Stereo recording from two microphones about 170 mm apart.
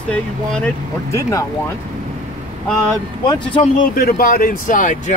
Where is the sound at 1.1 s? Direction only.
20° left (ahead or behind).